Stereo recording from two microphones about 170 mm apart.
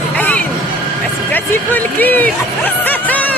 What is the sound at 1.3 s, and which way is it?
Speech, 10° left (ahead or behind).